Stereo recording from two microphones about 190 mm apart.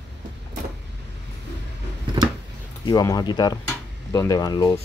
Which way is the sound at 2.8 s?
20° left (ahead or behind).